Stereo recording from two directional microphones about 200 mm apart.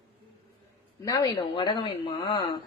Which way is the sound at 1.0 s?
15° left (ahead or behind).